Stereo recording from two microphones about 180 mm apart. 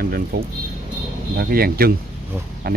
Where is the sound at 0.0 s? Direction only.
55° right (ahead or behind).